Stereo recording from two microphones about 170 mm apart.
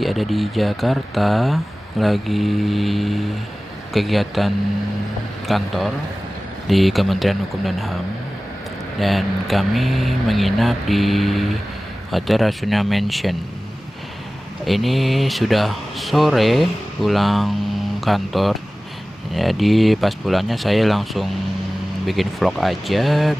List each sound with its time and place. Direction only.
0.0 s speech: centre (ahead or behind)
5.5 s speech: centre (ahead or behind)
6.7 s speech: centre (ahead or behind)
9.0 s speech: centre (ahead or behind)
14.7 s speech: centre (ahead or behind)